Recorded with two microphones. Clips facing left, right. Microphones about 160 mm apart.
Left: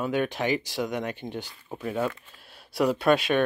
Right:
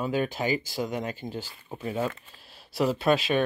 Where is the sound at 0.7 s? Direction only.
Centre (ahead or behind).